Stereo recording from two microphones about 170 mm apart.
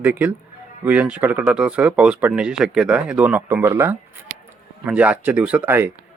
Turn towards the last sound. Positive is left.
turn(degrees=-10)  # may be behind; listen again after turning